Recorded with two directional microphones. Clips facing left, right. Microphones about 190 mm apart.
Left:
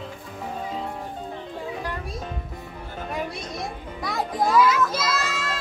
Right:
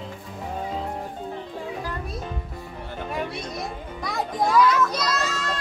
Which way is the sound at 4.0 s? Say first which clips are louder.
Even; centre (ahead or behind).